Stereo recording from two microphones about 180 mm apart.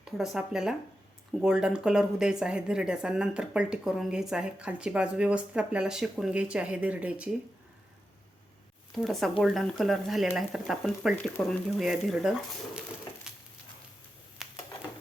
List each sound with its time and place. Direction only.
0.0 s speech: centre (ahead or behind)
9.0 s speech: centre (ahead or behind)
14.4 s a sound: centre (ahead or behind)